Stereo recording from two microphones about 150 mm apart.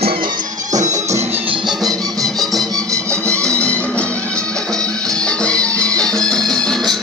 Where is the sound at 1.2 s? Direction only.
40° right (ahead or behind).